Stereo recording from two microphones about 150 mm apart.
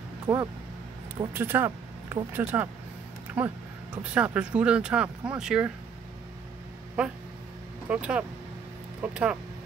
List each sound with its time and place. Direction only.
0.3 s speech: 15° right (ahead or behind)
7.9 s speech: 10° right (ahead or behind)